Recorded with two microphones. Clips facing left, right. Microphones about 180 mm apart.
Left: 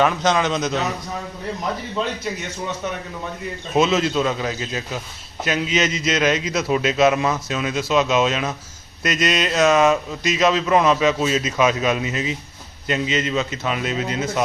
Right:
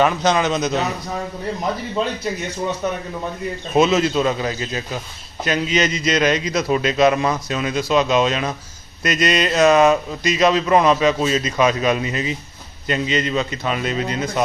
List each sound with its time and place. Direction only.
0.0 s speech: centre (ahead or behind)
2.8 s speech: 40° right (ahead or behind)
3.8 s speech: centre (ahead or behind)